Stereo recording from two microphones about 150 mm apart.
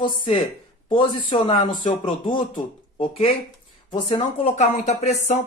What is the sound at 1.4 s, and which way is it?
Speech, 35° left (ahead or behind).